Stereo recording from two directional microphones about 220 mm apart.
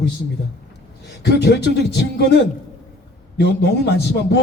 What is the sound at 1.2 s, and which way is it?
A man's voice, 50° left (ahead or behind).